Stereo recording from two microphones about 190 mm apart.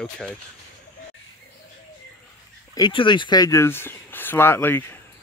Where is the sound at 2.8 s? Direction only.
25° left (ahead or behind).